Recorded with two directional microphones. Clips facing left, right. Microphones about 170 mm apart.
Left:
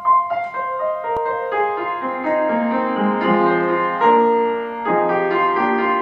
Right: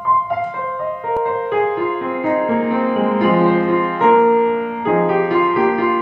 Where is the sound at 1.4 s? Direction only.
20° right (ahead or behind).